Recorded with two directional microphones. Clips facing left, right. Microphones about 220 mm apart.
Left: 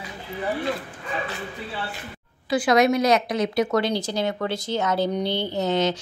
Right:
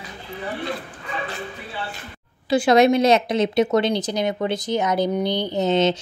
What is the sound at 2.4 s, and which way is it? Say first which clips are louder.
Speech: right 3 dB; 25° right (ahead or behind).